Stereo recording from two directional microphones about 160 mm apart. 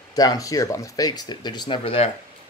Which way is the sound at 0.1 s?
25° left (ahead or behind).